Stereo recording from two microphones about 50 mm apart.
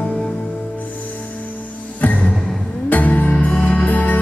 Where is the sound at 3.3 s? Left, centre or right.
Centre.